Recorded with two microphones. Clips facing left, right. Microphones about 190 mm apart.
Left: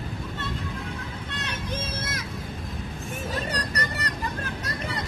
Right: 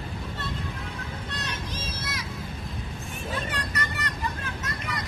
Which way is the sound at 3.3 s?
40° left (ahead or behind).